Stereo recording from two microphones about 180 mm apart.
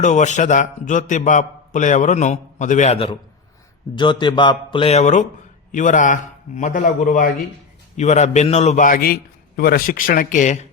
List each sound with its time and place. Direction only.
0.0 s a man's voice: 40° left (ahead or behind)